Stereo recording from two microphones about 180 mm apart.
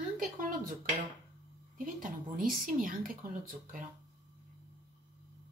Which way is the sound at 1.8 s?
50° right (ahead or behind).